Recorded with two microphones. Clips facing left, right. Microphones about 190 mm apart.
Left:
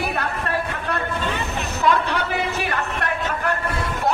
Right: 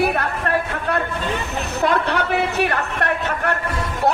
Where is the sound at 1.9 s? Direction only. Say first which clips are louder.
Left 1 dB; 65° right (ahead or behind).